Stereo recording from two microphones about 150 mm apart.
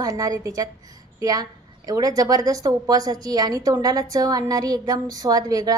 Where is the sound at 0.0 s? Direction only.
25° right (ahead or behind).